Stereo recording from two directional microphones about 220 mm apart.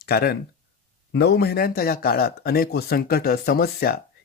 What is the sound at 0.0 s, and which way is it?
A man's voice, 45° left (ahead or behind).